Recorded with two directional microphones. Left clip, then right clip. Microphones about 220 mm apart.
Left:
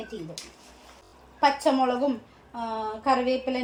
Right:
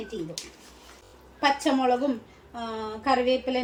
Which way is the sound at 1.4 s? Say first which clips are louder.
Left 2 dB; 15° left (ahead or behind).